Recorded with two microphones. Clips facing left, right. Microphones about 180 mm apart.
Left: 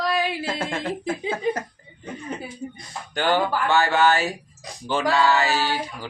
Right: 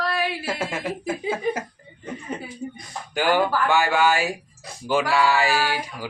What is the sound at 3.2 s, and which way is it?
Speech, 10° right (ahead or behind).